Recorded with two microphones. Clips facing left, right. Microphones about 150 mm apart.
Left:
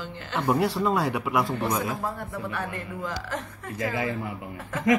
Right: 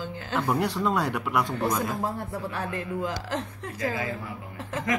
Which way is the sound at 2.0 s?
30° right (ahead or behind).